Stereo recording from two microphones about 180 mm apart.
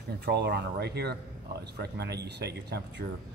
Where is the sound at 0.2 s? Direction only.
65° right (ahead or behind).